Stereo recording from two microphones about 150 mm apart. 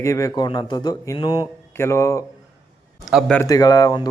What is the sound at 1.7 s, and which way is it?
Speech, 15° left (ahead or behind).